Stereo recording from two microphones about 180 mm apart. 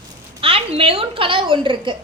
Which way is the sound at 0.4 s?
30° right (ahead or behind).